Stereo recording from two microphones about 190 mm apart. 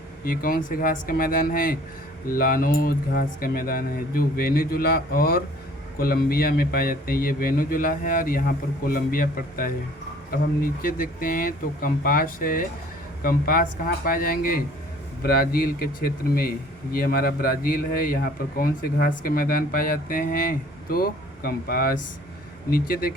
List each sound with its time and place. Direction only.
0.3 s a man's voice: 50° left (ahead or behind)